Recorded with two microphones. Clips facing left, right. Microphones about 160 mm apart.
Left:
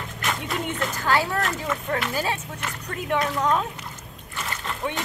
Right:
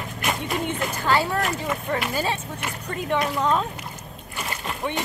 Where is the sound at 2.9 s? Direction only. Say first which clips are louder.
Right 1 dB; centre (ahead or behind).